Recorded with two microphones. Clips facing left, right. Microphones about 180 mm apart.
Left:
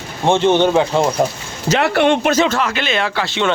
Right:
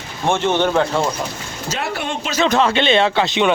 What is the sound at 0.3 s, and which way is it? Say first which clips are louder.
Speech: left 4 dB; 20° left (ahead or behind).